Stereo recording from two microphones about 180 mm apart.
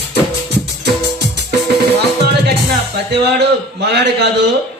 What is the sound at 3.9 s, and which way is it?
Speech, 70° right (ahead or behind).